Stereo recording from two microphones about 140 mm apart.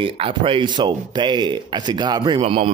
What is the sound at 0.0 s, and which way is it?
Speech, 35° right (ahead or behind).